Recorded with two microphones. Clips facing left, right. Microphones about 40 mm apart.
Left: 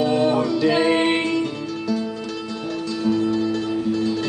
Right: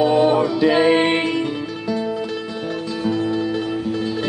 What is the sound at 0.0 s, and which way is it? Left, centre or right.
Music, centre.